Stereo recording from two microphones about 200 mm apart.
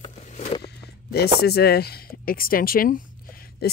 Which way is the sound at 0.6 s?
50° left (ahead or behind).